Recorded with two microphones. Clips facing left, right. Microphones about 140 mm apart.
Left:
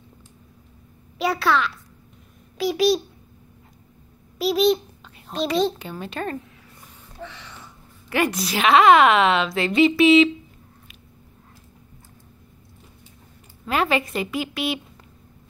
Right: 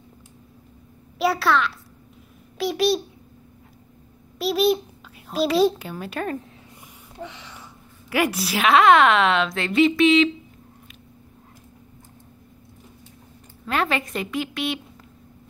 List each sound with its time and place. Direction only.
1.1 s a child's voice: centre (ahead or behind)
4.4 s a child's voice: centre (ahead or behind)
7.2 s a sound: 15° right (ahead or behind)
8.1 s a woman's voice: 5° right (ahead or behind)
13.7 s a woman's voice: 5° left (ahead or behind)